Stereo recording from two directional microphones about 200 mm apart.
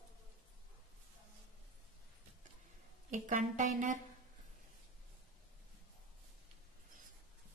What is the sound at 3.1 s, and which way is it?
Speech, 40° right (ahead or behind).